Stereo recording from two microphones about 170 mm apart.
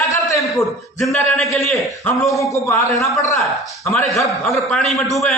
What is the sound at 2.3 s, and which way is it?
A man's voice, 20° left (ahead or behind).